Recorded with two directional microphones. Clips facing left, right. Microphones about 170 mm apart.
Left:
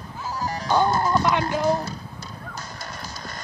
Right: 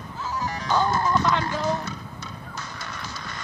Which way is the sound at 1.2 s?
15° left (ahead or behind).